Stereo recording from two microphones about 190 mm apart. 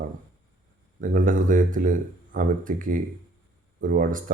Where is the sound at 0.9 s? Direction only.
45° right (ahead or behind).